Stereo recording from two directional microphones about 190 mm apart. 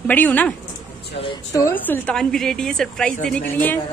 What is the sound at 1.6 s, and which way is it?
A woman's voice, 10° left (ahead or behind).